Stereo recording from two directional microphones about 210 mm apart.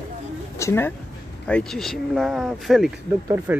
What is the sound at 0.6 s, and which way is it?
A woman's voice, 10° left (ahead or behind).